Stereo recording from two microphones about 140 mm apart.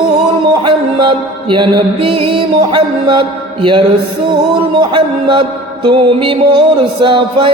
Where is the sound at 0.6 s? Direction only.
35° right (ahead or behind).